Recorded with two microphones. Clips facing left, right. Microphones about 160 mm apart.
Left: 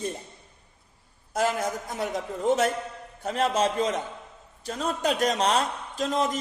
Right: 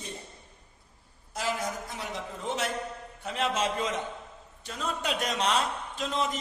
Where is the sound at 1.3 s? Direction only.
50° left (ahead or behind).